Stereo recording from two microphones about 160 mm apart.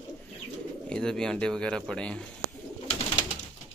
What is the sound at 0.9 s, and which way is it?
Music, 5° left (ahead or behind).